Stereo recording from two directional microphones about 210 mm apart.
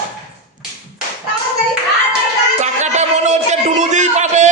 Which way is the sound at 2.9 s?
35° right (ahead or behind).